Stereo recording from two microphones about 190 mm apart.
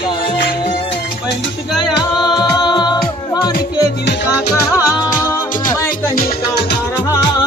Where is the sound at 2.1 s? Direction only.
25° left (ahead or behind).